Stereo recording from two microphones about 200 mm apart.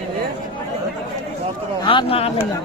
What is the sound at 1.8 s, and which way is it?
Speech, 25° left (ahead or behind).